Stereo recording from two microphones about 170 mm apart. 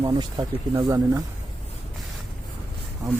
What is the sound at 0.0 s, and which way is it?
Speech, 30° right (ahead or behind).